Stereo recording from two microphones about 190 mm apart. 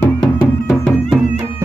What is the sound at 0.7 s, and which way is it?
Music, centre (ahead or behind).